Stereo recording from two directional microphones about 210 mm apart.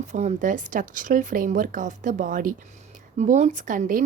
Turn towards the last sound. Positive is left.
turn(degrees=-40)  # may be behind; listen again after turning